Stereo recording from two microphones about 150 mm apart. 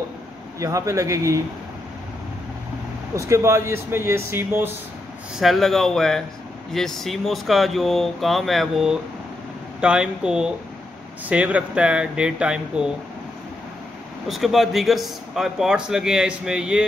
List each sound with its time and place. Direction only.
0.6 s speech: 20° right (ahead or behind)
3.2 s speech: 20° right (ahead or behind)
5.4 s speech: centre (ahead or behind)
14.2 s speech: centre (ahead or behind)